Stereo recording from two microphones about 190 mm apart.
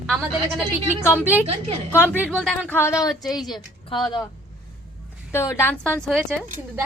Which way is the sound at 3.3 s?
20° left (ahead or behind).